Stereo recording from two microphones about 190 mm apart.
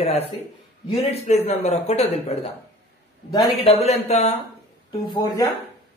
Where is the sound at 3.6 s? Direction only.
35° left (ahead or behind).